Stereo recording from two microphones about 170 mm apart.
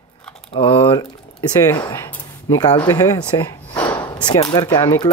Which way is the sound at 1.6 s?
20° left (ahead or behind).